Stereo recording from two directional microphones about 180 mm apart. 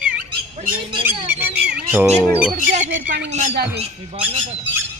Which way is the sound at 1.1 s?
10° right (ahead or behind).